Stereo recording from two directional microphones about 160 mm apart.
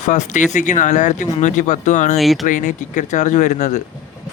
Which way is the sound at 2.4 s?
50° left (ahead or behind).